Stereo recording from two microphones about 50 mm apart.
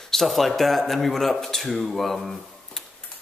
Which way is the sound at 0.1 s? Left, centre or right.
Centre.